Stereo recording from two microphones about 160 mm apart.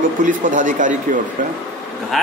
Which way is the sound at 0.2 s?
55° right (ahead or behind).